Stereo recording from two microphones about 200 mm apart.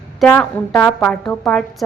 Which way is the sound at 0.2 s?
10° left (ahead or behind).